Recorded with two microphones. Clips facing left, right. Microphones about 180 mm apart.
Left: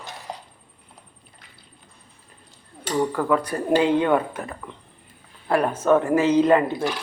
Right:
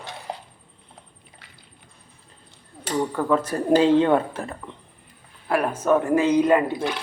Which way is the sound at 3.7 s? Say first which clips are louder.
Right 2 dB; 25° right (ahead or behind).